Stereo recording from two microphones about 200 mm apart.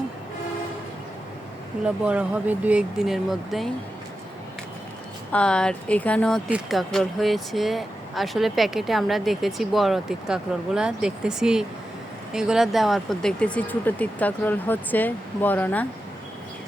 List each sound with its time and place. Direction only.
1.8 s speech: 5° right (ahead or behind)
5.3 s speech: 5° left (ahead or behind)